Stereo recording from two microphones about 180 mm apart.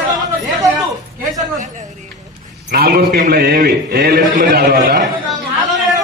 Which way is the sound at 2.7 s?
60° right (ahead or behind).